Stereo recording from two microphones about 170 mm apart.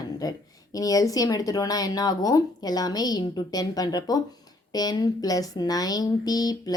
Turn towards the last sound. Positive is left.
turn(degrees=20)  # may be behind; listen again after turning